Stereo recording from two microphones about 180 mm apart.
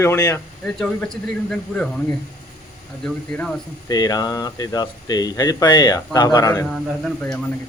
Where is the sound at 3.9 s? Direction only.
20° left (ahead or behind).